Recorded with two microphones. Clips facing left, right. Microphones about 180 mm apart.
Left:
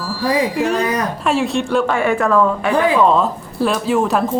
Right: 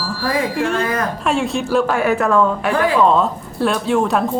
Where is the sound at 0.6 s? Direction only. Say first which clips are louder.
Left 1 dB; centre (ahead or behind).